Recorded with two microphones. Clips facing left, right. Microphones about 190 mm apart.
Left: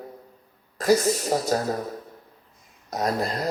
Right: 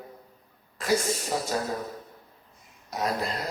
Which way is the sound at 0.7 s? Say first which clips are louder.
Left 6 dB; 40° left (ahead or behind).